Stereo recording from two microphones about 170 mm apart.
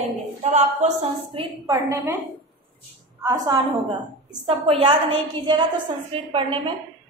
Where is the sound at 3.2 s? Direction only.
20° right (ahead or behind).